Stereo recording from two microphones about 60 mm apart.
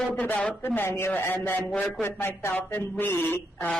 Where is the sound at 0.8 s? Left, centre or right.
Left.